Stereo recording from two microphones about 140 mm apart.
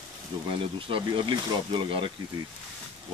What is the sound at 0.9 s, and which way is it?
Speech, 35° right (ahead or behind).